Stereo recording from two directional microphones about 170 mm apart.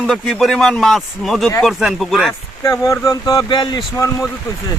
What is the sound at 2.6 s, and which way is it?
Speech, 20° left (ahead or behind).